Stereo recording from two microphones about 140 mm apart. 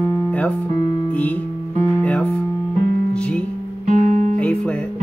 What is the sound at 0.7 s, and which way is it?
Music, 30° left (ahead or behind).